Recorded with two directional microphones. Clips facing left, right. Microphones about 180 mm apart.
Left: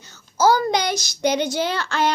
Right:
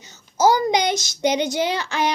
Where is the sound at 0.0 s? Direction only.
20° right (ahead or behind).